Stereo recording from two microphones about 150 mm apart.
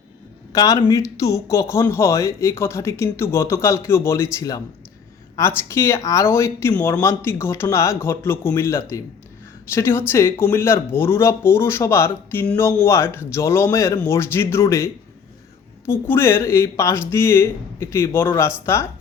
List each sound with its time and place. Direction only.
0.5 s speech: 25° left (ahead or behind)
15.9 s speech: 15° left (ahead or behind)